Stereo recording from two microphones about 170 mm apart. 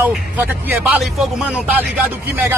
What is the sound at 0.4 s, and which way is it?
Speech, 10° right (ahead or behind).